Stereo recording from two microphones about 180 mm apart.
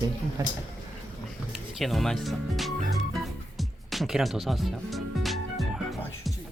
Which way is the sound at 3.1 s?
Centre (ahead or behind).